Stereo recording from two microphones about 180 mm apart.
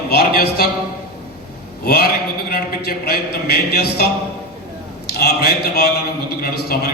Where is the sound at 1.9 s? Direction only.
60° left (ahead or behind).